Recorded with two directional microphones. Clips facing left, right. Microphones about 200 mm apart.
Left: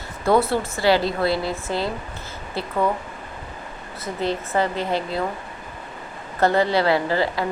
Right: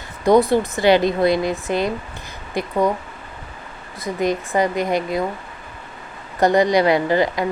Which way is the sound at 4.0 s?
15° right (ahead or behind).